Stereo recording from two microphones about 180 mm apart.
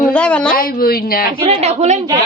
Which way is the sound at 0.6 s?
55° left (ahead or behind).